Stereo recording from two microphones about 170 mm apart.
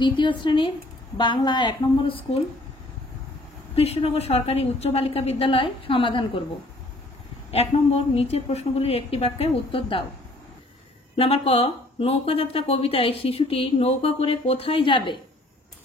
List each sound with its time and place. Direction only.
0.0 s a woman's voice: 30° left (ahead or behind)
3.7 s speech: 35° left (ahead or behind)
7.5 s speech: 35° left (ahead or behind)
11.1 s speech: 35° left (ahead or behind)